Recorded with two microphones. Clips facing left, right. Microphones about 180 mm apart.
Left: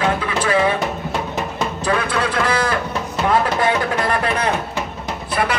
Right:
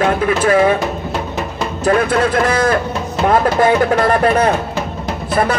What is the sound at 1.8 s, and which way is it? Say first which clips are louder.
A man's voice: right 8 dB; 45° right (ahead or behind).